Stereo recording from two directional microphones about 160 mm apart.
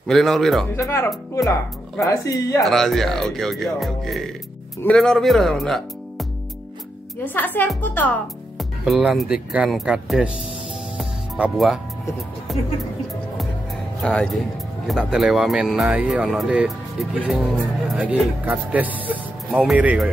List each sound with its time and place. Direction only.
0.0 s speech: centre (ahead or behind)
0.7 s speech: 15° left (ahead or behind)
2.6 s speech: centre (ahead or behind)
7.2 s speech: 10° left (ahead or behind)
8.5 s speech: centre (ahead or behind)
11.0 s music: 5° right (ahead or behind)
12.5 s speech: centre (ahead or behind)
14.0 s speech: 5° left (ahead or behind)